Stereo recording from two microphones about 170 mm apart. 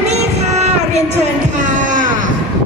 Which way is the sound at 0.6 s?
40° right (ahead or behind).